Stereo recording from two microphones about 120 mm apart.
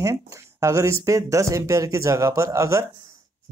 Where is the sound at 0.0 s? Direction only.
25° right (ahead or behind).